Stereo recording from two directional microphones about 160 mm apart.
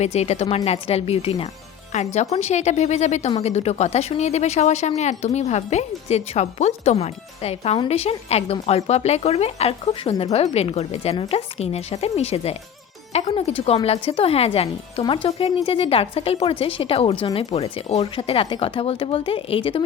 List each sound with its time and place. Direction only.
0.0 s speech: 45° left (ahead or behind)